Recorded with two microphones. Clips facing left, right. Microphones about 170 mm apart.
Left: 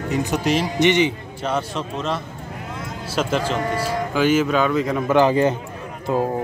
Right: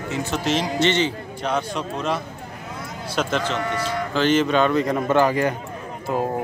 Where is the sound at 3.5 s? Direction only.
35° left (ahead or behind).